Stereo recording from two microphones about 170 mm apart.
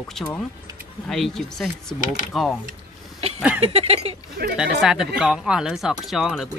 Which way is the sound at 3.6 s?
35° right (ahead or behind).